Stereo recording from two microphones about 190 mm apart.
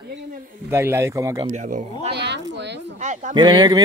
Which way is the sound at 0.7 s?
15° right (ahead or behind).